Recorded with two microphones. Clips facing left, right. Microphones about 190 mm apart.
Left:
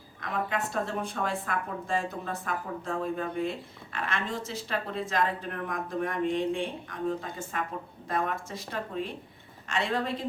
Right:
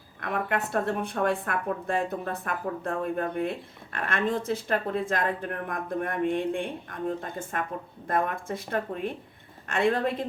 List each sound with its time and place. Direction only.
0.2 s a woman's voice: 60° right (ahead or behind)